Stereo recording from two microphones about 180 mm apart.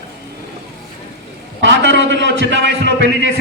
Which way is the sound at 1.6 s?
90° right.